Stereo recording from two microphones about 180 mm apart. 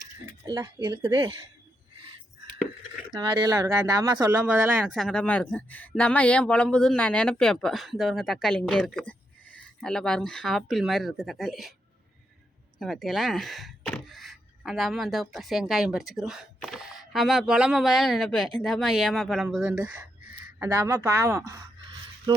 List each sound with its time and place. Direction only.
0.4 s speech: 25° right (ahead or behind)
3.1 s speech: 25° right (ahead or behind)
4.9 s speech: 5° left (ahead or behind)
12.8 s speech: centre (ahead or behind); by 21.7 s 20° right (ahead or behind)